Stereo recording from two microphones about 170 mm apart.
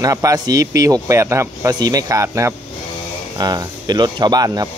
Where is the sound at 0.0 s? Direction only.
20° right (ahead or behind).